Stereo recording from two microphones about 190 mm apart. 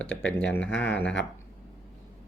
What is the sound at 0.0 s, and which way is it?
Speech, 5° left (ahead or behind).